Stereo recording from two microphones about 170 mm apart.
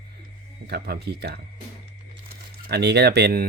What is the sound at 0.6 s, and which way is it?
Speech, 70° right (ahead or behind).